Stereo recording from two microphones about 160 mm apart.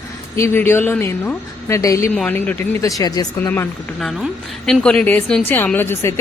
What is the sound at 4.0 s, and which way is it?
A woman's voice, centre (ahead or behind).